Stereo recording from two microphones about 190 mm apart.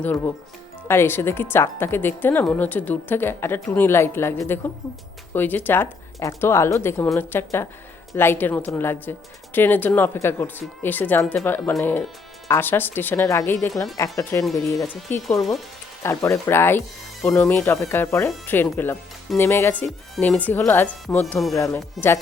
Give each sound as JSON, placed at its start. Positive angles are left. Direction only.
{"t": 0.0, "sound": "a woman's voice", "side_deg": 10}
{"t": 14.6, "sound": "speech", "side_deg": 0}
{"t": 16.0, "sound": "a woman's voice", "side_deg": 15}
{"t": 21.5, "sound": "a woman's voice", "side_deg": 15}
{"t": 22.0, "sound": "speech", "side_deg": 0}